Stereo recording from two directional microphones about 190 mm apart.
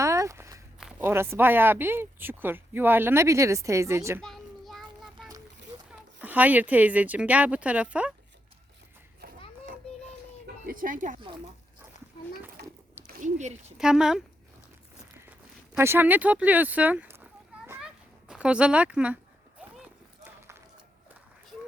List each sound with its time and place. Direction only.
0.0 s walk: 15° right (ahead or behind)
0.8 s speech: 5° right (ahead or behind)
4.2 s child singing: centre (ahead or behind)
5.9 s speech: 10° right (ahead or behind)
9.2 s children playing: 55° right (ahead or behind)
10.4 s speech: 50° right (ahead or behind)
13.1 s speech: 45° right (ahead or behind)
13.7 s speech: 5° right (ahead or behind)
15.3 s speech: 10° right (ahead or behind)
17.7 s a sound: 5° right (ahead or behind)